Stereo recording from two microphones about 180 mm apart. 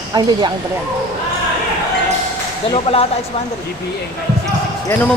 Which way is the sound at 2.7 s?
30° left (ahead or behind).